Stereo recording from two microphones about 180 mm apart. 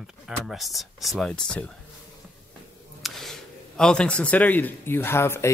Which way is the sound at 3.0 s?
Centre (ahead or behind).